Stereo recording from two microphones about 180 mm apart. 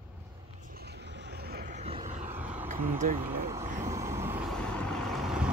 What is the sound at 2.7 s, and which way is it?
Speech, 45° right (ahead or behind).